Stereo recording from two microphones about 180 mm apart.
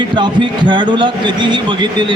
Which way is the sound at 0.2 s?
25° right (ahead or behind).